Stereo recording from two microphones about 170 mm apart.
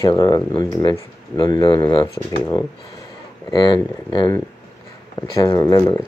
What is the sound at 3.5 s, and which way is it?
Speech, 25° left (ahead or behind).